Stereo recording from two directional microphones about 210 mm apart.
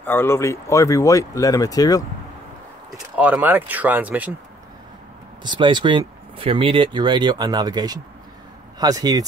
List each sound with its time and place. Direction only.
0.0 s speech: 10° left (ahead or behind)
3.2 s speech: 10° right (ahead or behind)
5.4 s speech: 20° right (ahead or behind)